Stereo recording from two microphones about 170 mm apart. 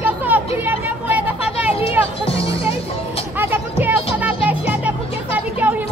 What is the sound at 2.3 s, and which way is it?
Music, 35° left (ahead or behind).